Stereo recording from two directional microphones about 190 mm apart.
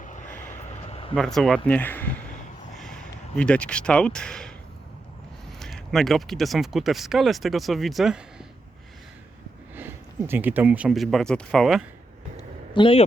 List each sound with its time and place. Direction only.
0.0 s vehicle: 40° left (ahead or behind)
1.1 s speech: centre (ahead or behind)
5.5 s speech: centre (ahead or behind)
9.7 s speech: 10° right (ahead or behind)
12.4 s a sound: 25° left (ahead or behind)